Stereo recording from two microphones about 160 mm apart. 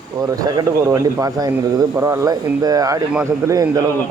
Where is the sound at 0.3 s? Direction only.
25° right (ahead or behind).